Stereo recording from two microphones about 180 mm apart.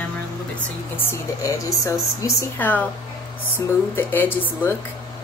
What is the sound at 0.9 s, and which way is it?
A woman's voice, 15° left (ahead or behind).